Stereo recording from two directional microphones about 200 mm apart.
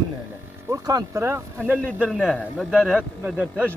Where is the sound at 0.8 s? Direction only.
15° right (ahead or behind).